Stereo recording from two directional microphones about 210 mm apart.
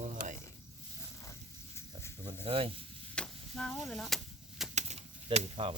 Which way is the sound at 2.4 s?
25° right (ahead or behind).